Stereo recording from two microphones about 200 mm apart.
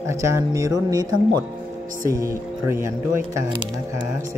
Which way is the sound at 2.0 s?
15° right (ahead or behind).